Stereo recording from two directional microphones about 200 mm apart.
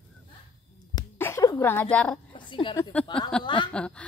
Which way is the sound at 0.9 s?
15° left (ahead or behind).